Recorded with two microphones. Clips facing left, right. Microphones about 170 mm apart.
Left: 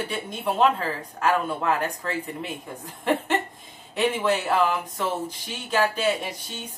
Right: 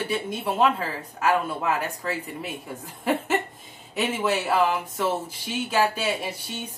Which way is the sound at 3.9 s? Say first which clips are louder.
Left 2 dB; 5° right (ahead or behind).